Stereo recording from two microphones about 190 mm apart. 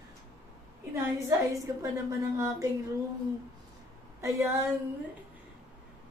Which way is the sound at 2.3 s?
15° right (ahead or behind).